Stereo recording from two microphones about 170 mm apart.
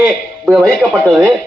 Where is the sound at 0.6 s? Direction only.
Centre (ahead or behind).